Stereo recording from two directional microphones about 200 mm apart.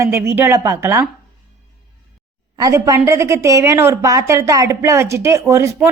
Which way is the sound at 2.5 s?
15° right (ahead or behind).